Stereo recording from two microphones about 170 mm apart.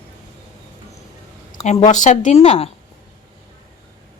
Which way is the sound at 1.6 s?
45° left (ahead or behind).